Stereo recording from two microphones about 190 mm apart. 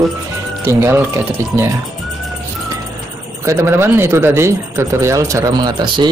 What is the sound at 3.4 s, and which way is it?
A man's voice, 15° right (ahead or behind).